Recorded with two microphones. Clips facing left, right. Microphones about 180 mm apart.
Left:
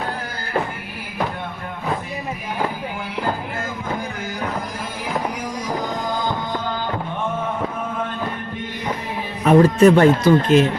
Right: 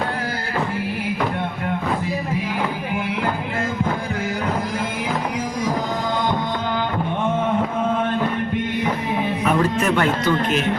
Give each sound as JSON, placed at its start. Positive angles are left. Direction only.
{"t": 9.4, "sound": "speech", "side_deg": 35}